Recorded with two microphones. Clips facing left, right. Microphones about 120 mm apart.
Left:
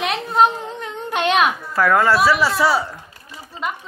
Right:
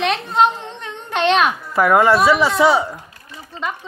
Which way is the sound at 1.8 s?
20° right (ahead or behind).